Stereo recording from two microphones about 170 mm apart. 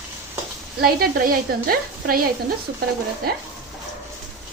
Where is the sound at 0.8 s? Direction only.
65° right (ahead or behind).